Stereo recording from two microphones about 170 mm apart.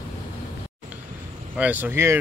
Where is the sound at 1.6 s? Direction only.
10° right (ahead or behind).